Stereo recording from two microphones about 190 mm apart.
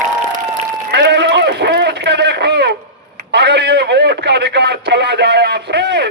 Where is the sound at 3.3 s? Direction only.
60° right (ahead or behind).